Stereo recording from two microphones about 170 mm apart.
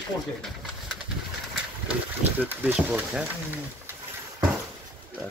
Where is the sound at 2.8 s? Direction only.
5° right (ahead or behind).